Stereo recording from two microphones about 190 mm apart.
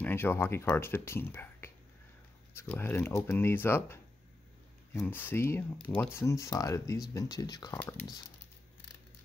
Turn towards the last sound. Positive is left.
turn(degrees=20)  # may be behind; listen again after turning